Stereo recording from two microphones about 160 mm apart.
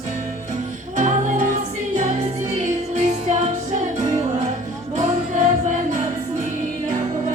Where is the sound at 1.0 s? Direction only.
55° right (ahead or behind).